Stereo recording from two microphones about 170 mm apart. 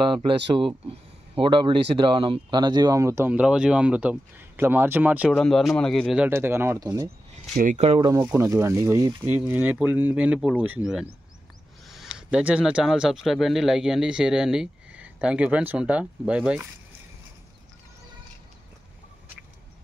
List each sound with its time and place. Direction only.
0.6 s speech: 30° right (ahead or behind)
7.5 s speech: 45° right (ahead or behind)
8.0 s speech: 20° right (ahead or behind)